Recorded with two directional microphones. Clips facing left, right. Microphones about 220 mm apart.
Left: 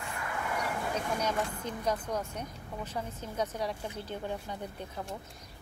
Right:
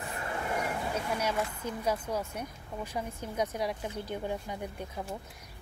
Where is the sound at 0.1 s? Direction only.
30° right (ahead or behind).